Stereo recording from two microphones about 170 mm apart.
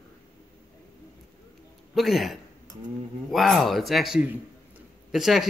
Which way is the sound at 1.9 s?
Centre (ahead or behind).